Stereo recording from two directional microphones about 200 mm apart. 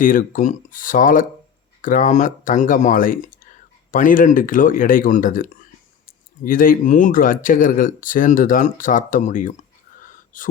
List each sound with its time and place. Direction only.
0.0 s speech: 45° left (ahead or behind)